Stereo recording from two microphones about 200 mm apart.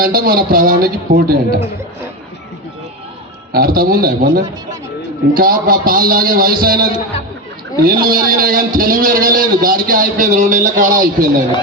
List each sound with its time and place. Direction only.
0.0 s a man's voice: 50° right (ahead or behind)
3.5 s a man's voice: 45° right (ahead or behind)